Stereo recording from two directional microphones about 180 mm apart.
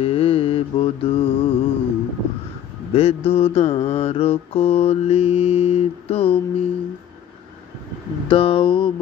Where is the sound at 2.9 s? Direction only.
35° left (ahead or behind).